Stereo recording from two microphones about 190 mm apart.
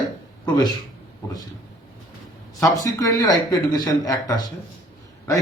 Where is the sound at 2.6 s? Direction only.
20° left (ahead or behind).